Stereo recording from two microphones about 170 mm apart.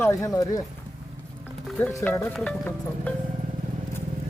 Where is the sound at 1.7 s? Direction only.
10° left (ahead or behind).